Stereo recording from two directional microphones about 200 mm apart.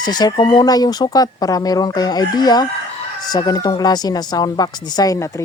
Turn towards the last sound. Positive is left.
turn(degrees=15)  # may be behind; listen again after turning